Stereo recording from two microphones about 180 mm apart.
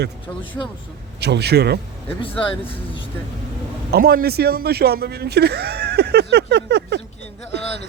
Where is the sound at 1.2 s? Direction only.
65° right (ahead or behind).